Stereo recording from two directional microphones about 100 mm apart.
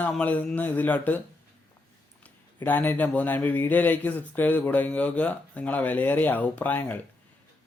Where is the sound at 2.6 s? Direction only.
20° left (ahead or behind).